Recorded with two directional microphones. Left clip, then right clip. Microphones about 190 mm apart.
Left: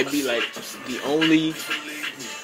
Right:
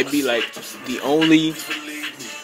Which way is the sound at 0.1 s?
25° right (ahead or behind).